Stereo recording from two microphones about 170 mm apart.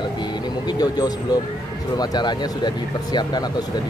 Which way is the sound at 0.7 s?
25° left (ahead or behind).